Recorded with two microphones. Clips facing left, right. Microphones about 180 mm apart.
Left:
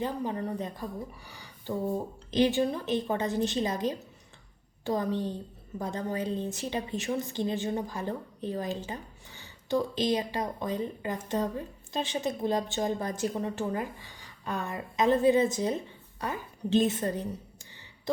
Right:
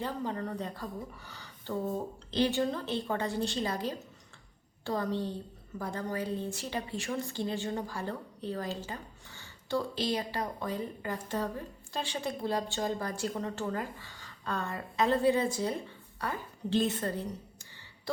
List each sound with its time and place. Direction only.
0.0 s a woman's voice: 15° left (ahead or behind)